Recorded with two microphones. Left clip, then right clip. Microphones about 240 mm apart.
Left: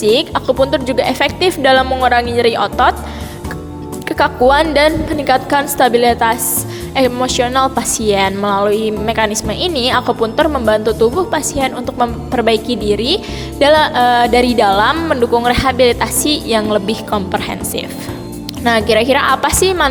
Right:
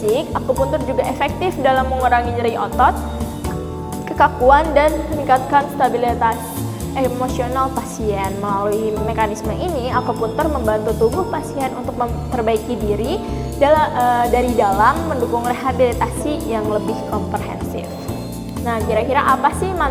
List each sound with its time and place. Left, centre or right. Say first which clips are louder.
0.1 s speech: left 5 dB; left
4.1 s speech: left 1 dB; left
18.6 s speech: left 7 dB; left